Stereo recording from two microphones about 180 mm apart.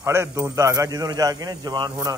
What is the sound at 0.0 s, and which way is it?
A man's voice, 15° right (ahead or behind).